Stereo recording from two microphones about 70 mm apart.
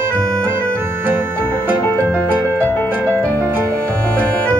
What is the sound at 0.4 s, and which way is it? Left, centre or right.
Organ, centre.